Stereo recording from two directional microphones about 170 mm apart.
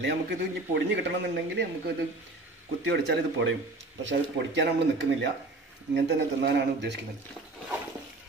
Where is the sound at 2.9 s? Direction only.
90° right.